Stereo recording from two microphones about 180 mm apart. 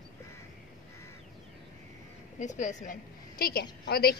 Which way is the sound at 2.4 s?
40° left (ahead or behind).